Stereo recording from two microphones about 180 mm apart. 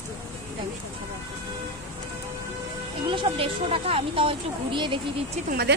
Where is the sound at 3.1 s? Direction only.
30° right (ahead or behind).